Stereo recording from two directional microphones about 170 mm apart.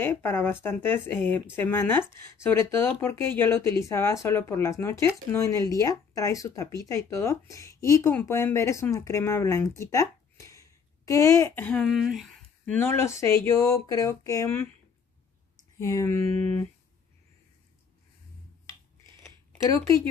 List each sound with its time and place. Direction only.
0.0 s speech: 15° left (ahead or behind)
15.8 s speech: 20° left (ahead or behind)
16.2 s a sound: 40° right (ahead or behind)